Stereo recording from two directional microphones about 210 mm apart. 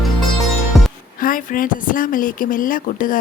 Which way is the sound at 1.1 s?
40° left (ahead or behind).